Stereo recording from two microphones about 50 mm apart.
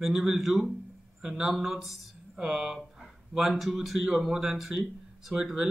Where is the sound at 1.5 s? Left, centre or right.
Centre.